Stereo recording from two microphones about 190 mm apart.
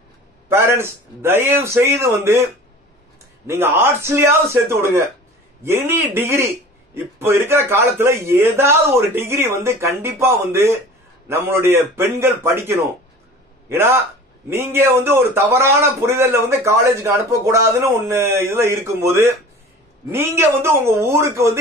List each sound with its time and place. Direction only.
0.5 s a man's voice: 15° right (ahead or behind)
3.4 s a man's voice: 10° right (ahead or behind)